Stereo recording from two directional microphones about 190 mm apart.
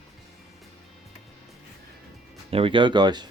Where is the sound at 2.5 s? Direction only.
30° right (ahead or behind).